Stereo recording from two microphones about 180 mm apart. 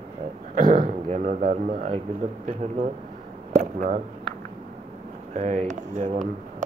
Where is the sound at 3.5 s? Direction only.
45° right (ahead or behind).